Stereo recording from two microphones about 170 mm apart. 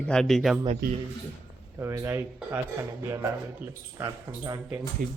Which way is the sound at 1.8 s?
15° right (ahead or behind).